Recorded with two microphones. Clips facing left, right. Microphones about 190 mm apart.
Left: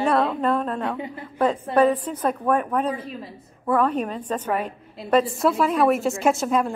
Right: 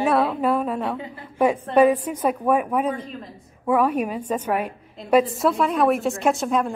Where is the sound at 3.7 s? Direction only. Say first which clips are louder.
Right 1 dB; 10° right (ahead or behind).